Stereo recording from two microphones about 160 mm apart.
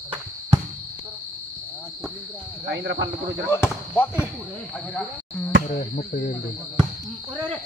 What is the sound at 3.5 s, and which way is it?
Speech, 15° left (ahead or behind).